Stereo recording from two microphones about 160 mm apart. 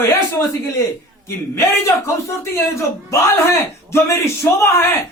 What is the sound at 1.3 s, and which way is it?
A man's voice, 15° left (ahead or behind).